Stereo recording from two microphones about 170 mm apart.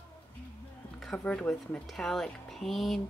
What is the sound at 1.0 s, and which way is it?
Speech, 5° left (ahead or behind).